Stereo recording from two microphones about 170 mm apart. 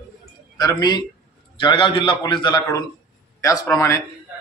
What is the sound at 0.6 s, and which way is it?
A man's voice, 25° left (ahead or behind).